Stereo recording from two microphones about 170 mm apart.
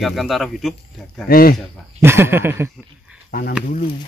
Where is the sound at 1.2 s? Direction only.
60° left (ahead or behind).